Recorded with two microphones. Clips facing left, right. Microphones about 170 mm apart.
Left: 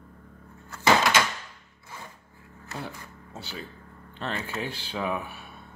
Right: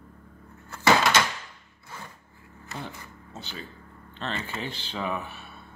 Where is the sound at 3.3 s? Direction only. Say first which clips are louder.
Left 1 dB; 10° left (ahead or behind).